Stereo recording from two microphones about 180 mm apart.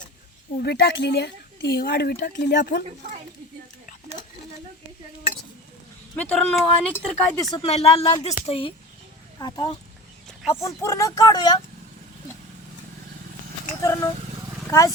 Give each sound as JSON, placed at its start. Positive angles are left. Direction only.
{"t": 0.6, "sound": "speech", "side_deg": 60}
{"t": 6.1, "sound": "speech", "side_deg": 5}
{"t": 7.6, "sound": "speech", "side_deg": 35}
{"t": 9.4, "sound": "speech", "side_deg": 20}
{"t": 13.8, "sound": "speech", "side_deg": 20}